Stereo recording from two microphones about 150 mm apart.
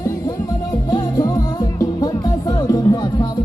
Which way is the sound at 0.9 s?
25° left (ahead or behind).